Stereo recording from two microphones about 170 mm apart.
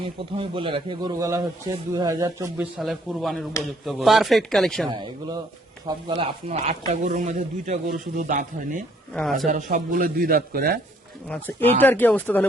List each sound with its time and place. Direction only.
0.0 s a man's voice: 30° right (ahead or behind)
2.6 s speech: centre (ahead or behind)
4.9 s a man's voice: 25° right (ahead or behind); by 8.8 s 50° right (ahead or behind)
9.1 s speech: centre (ahead or behind)
9.5 s a man's voice: 50° right (ahead or behind)
11.8 s speech: 10° left (ahead or behind)